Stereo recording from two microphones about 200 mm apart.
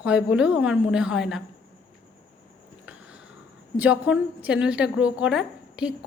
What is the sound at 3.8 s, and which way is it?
A woman's voice, 5° right (ahead or behind).